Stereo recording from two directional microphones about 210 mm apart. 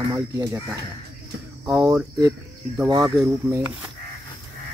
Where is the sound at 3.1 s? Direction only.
5° right (ahead or behind).